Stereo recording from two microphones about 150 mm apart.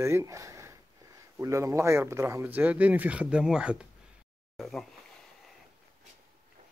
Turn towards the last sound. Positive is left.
turn(degrees=0)  # may be behind; listen again after turning